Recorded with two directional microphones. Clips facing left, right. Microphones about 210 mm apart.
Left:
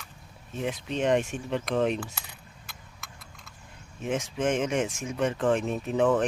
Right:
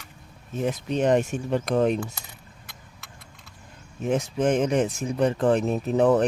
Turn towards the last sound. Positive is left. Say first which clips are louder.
# right 4 dB
turn(degrees=-40)  # may be behind; listen again after turning